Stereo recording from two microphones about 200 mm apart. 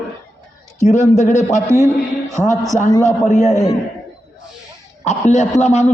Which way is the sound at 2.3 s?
15° right (ahead or behind).